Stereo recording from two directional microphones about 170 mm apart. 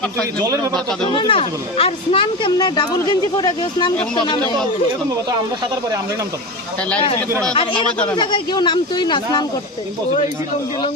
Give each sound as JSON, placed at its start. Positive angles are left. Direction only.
{"t": 1.1, "sound": "speech", "side_deg": 30}
{"t": 7.5, "sound": "speech", "side_deg": 30}